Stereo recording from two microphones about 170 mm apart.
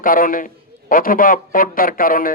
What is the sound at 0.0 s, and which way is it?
A man's voice, 55° left (ahead or behind).